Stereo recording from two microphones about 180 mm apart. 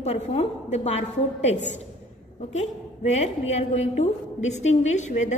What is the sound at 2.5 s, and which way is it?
A woman's voice, 40° left (ahead or behind).